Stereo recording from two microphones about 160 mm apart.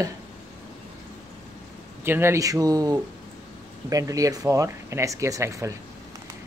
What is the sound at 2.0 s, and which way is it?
Speech, 15° right (ahead or behind).